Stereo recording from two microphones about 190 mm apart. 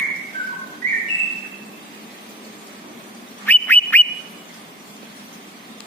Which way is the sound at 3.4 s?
10° left (ahead or behind).